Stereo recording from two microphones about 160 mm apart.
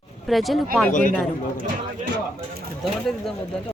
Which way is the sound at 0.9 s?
55° left (ahead or behind).